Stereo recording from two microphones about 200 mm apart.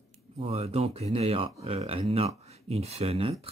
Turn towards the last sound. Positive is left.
turn(degrees=-30)  # may be behind; listen again after turning